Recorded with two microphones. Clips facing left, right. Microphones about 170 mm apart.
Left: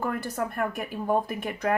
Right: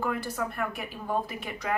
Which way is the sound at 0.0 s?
50° left (ahead or behind).